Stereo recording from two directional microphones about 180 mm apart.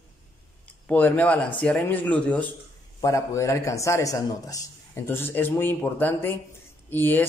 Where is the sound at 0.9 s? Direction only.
10° left (ahead or behind).